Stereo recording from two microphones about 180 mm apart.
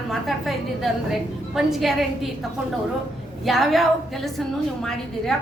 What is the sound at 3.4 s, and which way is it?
A woman's voice, centre (ahead or behind).